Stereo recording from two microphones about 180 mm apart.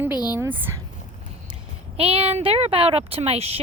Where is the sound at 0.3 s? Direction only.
10° right (ahead or behind).